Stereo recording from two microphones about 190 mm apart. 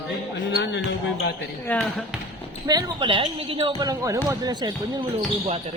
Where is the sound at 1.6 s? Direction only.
10° left (ahead or behind).